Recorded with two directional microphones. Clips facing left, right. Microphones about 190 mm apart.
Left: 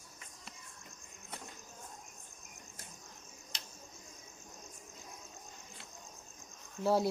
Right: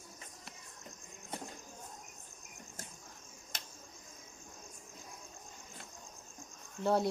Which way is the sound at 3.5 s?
50° right (ahead or behind).